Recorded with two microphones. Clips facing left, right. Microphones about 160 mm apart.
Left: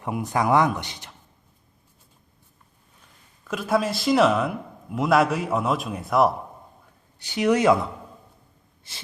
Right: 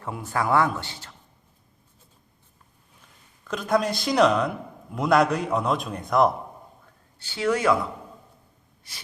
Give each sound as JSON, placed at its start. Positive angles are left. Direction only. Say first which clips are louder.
{"t": 0.0, "sound": "a man's voice", "louder": "left 3 dB", "side_deg": 15}
{"t": 3.4, "sound": "a man's voice", "louder": "even", "side_deg": 5}
{"t": 7.2, "sound": "a man's voice", "louder": "left 4 dB", "side_deg": 15}